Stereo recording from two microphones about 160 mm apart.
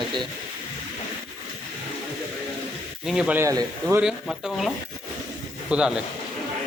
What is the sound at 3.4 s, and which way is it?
Speech, 20° right (ahead or behind).